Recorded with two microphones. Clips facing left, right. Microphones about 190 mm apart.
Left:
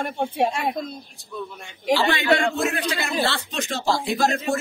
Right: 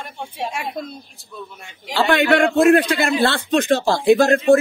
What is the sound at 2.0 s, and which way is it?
A man's voice, 55° right (ahead or behind).